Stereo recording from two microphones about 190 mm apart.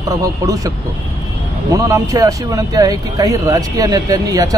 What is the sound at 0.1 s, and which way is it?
A man's voice, 15° right (ahead or behind).